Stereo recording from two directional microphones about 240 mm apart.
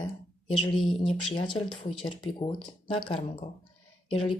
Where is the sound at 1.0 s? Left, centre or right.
Left.